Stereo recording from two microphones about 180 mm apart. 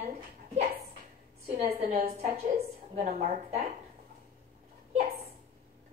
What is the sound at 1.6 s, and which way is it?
Speech, 35° right (ahead or behind).